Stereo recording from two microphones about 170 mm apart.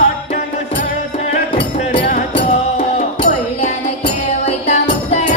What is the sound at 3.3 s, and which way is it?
Music, 40° left (ahead or behind).